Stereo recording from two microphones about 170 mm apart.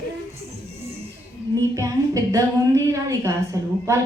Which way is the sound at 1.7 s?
20° right (ahead or behind).